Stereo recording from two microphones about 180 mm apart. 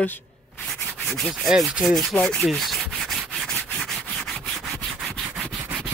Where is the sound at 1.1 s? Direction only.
Centre (ahead or behind).